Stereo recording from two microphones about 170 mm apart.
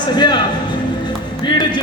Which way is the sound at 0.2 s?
25° left (ahead or behind).